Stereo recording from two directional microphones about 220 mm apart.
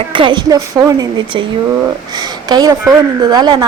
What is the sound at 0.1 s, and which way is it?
A woman's voice, 20° right (ahead or behind).